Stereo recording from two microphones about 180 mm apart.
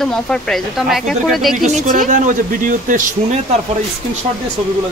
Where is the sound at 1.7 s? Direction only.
45° right (ahead or behind).